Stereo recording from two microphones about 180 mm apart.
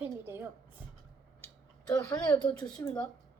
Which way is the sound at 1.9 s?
20° left (ahead or behind).